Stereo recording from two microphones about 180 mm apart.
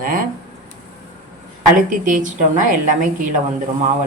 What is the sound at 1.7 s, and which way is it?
A woman's voice, 45° right (ahead or behind).